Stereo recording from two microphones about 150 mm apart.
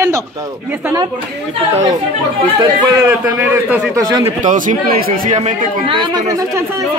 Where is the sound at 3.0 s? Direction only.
15° right (ahead or behind).